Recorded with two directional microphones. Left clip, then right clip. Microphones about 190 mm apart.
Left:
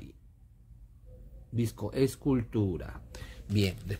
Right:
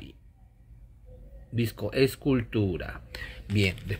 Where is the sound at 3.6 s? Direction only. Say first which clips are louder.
Right 5 dB; 5° right (ahead or behind).